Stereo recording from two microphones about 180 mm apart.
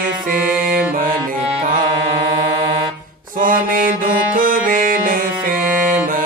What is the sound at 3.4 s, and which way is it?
Music, 50° right (ahead or behind).